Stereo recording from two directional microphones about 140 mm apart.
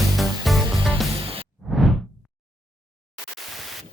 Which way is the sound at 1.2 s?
40° right (ahead or behind).